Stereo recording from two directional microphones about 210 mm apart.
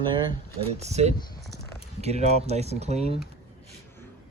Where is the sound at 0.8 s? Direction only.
30° right (ahead or behind).